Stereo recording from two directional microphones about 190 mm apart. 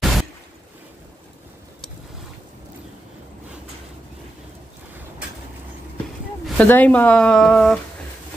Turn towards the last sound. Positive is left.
turn(degrees=5)  # may be behind; listen again after turning